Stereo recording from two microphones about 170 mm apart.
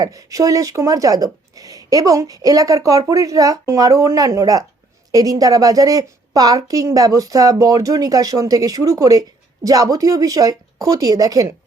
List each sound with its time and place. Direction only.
0.0 s speech: 20° right (ahead or behind)